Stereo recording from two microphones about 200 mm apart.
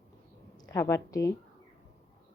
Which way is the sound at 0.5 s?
20° left (ahead or behind).